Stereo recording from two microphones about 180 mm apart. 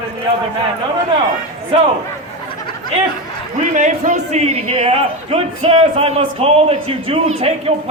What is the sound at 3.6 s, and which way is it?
A man's voice, 45° right (ahead or behind).